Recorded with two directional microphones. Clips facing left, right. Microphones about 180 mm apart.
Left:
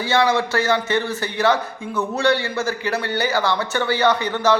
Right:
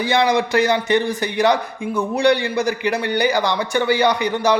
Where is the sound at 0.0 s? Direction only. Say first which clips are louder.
Right 1 dB; 15° right (ahead or behind).